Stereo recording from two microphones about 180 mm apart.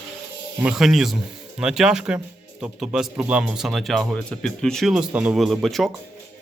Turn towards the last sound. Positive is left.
turn(degrees=0)  # may be behind; listen again after turning